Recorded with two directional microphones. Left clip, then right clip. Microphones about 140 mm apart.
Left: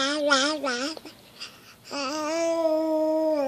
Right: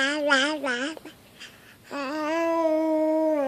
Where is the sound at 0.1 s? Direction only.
10° right (ahead or behind).